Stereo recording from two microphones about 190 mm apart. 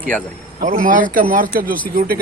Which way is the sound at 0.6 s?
45° right (ahead or behind).